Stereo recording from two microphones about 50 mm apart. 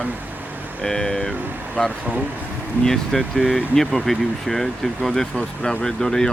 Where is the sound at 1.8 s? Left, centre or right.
Left.